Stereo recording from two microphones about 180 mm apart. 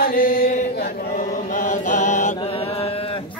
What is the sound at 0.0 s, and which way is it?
Chant, 50° left (ahead or behind).